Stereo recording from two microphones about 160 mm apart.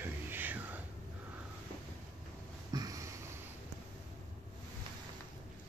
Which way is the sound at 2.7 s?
20° right (ahead or behind).